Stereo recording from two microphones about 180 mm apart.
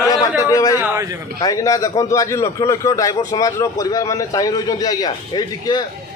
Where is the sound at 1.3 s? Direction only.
20° left (ahead or behind).